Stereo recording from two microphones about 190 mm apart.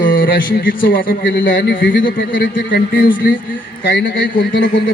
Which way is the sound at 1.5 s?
65° left (ahead or behind).